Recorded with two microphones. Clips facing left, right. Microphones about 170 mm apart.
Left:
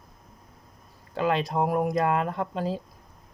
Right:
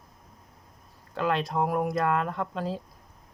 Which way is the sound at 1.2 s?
5° left (ahead or behind).